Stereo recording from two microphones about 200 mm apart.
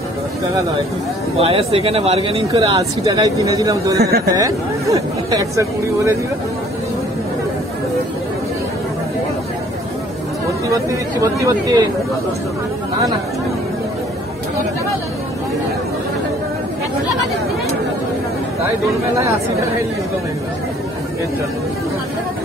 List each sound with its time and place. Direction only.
1.4 s speech: 30° right (ahead or behind)
10.9 s speech: 15° right (ahead or behind)